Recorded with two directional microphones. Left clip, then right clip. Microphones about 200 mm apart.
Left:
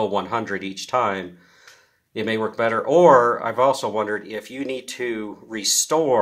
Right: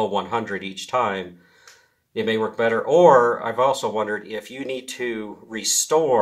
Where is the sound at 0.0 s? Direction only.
15° left (ahead or behind).